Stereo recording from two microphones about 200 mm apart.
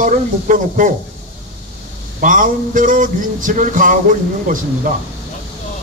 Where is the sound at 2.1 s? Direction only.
45° right (ahead or behind).